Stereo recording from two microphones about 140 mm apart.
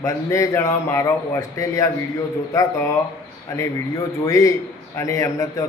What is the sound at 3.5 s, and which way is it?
A man's voice, 20° left (ahead or behind).